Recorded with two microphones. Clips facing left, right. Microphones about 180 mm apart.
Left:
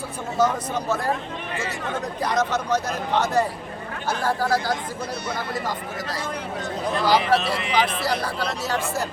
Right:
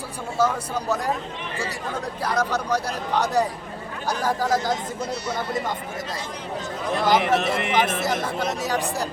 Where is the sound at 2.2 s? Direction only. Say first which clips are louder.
Left 1 dB; 10° right (ahead or behind).